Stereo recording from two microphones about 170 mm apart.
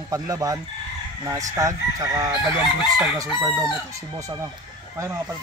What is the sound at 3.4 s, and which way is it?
Speech, 25° right (ahead or behind).